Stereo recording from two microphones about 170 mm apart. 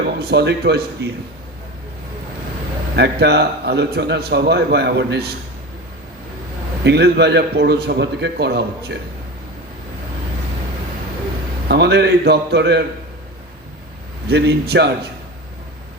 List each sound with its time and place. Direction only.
0.2 s a man's voice: 80° right
2.9 s a man's voice: 75° right (ahead or behind)
6.8 s a man's voice: 80° right
11.7 s a man's voice: 80° right
14.3 s a man's voice: 75° right (ahead or behind)